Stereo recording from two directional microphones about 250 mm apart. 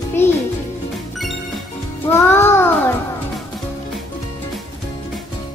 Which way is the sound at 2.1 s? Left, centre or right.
Centre.